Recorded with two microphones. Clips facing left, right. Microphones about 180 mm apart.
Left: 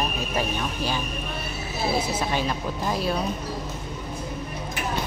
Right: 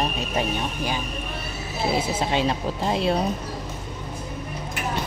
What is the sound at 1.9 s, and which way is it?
Speech, 25° right (ahead or behind).